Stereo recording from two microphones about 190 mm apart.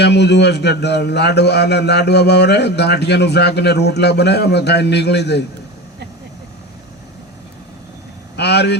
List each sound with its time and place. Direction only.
0.0 s a man's voice: 60° left (ahead or behind)
8.4 s a man's voice: 60° left (ahead or behind)